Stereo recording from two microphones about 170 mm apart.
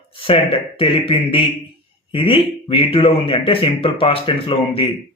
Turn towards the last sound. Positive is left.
turn(degrees=30)  # may be behind; listen again after turning